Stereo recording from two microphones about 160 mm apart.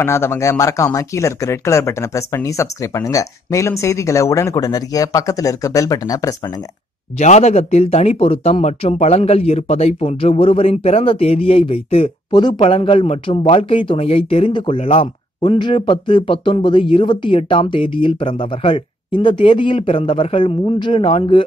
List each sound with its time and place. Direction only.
0.0 s speech: 15° left (ahead or behind)
7.2 s speech: 45° left (ahead or behind)